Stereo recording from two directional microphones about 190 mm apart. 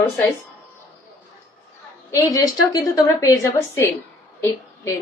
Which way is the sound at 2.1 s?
20° left (ahead or behind).